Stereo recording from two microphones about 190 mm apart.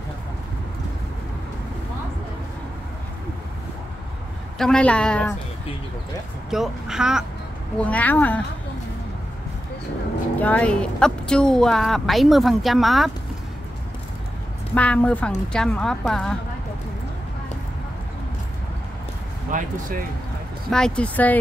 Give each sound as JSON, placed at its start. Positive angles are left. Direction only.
{"t": 4.6, "sound": "a woman's voice", "side_deg": 5}
{"t": 6.5, "sound": "a woman's voice", "side_deg": -5}
{"t": 7.8, "sound": "a woman's voice", "side_deg": 10}
{"t": 10.4, "sound": "a woman's voice", "side_deg": 5}
{"t": 14.7, "sound": "a woman's voice", "side_deg": 5}
{"t": 19.5, "sound": "speech", "side_deg": -45}
{"t": 20.7, "sound": "a woman's voice", "side_deg": 5}